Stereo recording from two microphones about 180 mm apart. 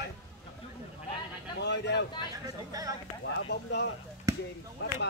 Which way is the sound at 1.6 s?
75° left (ahead or behind).